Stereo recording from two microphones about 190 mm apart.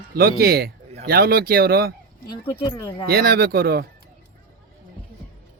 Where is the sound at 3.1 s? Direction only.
55° right (ahead or behind).